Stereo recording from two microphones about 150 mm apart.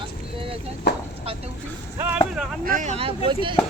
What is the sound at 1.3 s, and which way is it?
Speech, 40° right (ahead or behind).